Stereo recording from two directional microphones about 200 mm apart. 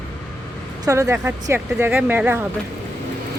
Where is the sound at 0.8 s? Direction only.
15° right (ahead or behind).